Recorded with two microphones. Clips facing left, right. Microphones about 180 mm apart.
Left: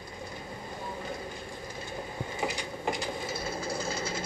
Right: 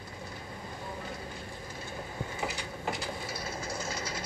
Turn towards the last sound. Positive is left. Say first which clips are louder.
# left 4 dB
turn(degrees=30)  # may be behind; listen again after turning